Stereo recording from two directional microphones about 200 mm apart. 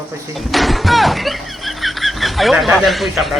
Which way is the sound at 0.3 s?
Centre (ahead or behind).